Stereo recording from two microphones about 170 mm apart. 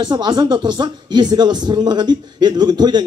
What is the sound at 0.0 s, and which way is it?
Speech, 25° right (ahead or behind).